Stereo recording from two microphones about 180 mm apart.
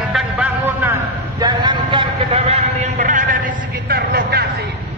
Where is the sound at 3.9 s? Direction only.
60° right (ahead or behind).